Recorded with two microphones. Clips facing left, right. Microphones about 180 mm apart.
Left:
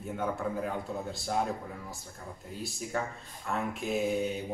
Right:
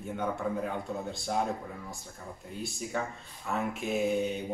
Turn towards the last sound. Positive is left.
turn(degrees=0)  # may be behind; listen again after turning